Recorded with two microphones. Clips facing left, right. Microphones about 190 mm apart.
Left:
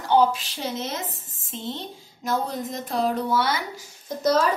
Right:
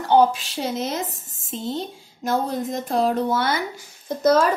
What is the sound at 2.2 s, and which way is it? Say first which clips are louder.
A woman's voice: right 3 dB; 50° right (ahead or behind).